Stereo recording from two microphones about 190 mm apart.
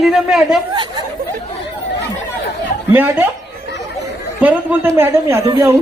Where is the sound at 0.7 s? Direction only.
25° right (ahead or behind).